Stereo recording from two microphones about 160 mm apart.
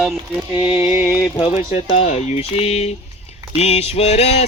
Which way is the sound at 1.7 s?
40° left (ahead or behind).